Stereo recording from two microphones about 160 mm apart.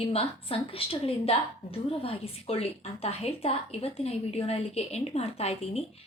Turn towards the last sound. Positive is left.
turn(degrees=40)  # may be behind; listen again after turning